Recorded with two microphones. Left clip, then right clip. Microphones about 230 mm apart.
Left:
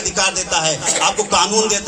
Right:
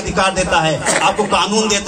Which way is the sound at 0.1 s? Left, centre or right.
Left.